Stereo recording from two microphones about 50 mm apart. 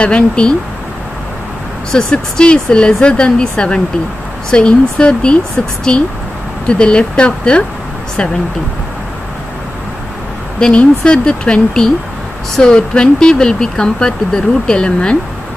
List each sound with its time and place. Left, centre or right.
0.0 s speech: centre
1.9 s speech: centre
6.7 s speech: centre
10.6 s speech: centre